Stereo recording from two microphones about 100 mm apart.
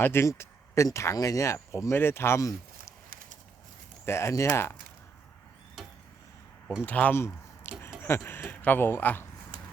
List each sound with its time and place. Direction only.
0.0 s speech: 25° left (ahead or behind)
4.0 s speech: 30° left (ahead or behind)
6.8 s speech: 15° left (ahead or behind)